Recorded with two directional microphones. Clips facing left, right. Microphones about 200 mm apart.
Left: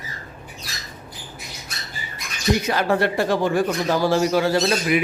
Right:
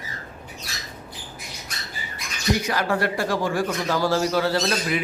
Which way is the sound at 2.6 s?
25° left (ahead or behind).